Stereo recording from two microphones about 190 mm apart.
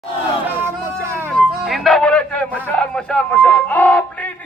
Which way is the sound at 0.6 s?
15° right (ahead or behind).